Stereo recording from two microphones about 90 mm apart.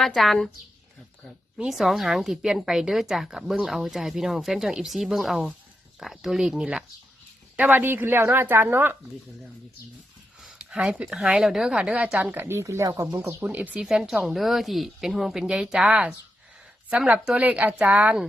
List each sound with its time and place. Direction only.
0.0 s a woman's voice: 5° left (ahead or behind)
7.5 s speech: 20° right (ahead or behind)
10.4 s speech: 5° right (ahead or behind)
12.3 s speech: 25° right (ahead or behind)
13.7 s a woman's voice: 10° right (ahead or behind)